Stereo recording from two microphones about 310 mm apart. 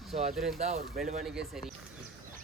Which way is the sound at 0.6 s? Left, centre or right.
Right.